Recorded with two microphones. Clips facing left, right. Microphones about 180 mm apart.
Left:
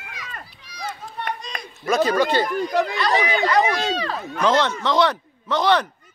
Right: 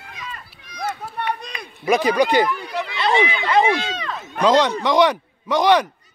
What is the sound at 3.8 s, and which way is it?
Speech, 35° left (ahead or behind).